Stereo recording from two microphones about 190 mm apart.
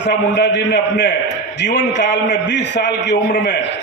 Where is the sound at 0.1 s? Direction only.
65° left (ahead or behind).